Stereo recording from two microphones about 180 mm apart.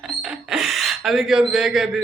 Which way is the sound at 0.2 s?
5° right (ahead or behind).